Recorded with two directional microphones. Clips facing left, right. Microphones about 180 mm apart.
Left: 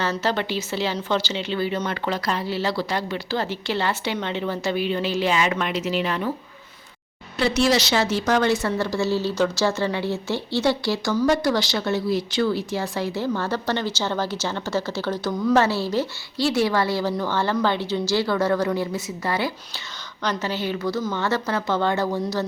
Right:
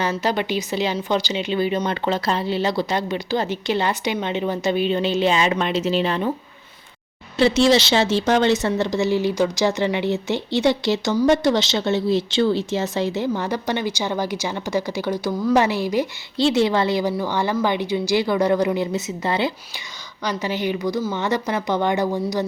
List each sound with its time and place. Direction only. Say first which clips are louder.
0.0 s a woman's voice: right 2 dB; 15° right (ahead or behind)
7.3 s a woman's voice: right 4 dB; 25° right (ahead or behind)